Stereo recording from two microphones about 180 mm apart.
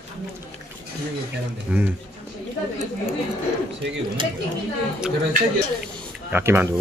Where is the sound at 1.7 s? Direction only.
5° right (ahead or behind).